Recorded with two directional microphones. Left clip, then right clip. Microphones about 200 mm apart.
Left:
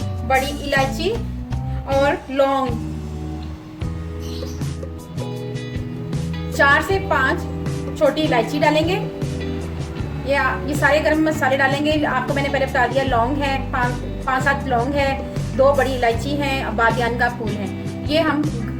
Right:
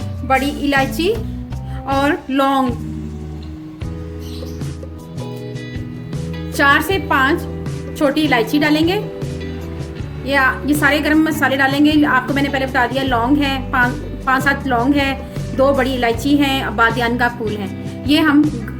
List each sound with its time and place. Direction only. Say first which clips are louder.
0.3 s a woman's voice: right 3 dB; 55° right (ahead or behind)
6.6 s a woman's voice: right 2 dB; 45° right (ahead or behind)
10.2 s a woman's voice: right 4 dB; 40° right (ahead or behind)